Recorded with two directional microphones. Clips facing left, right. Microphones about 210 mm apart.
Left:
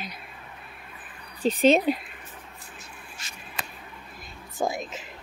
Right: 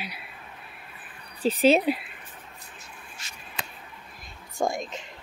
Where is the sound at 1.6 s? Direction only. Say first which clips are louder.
Even; 5° right (ahead or behind).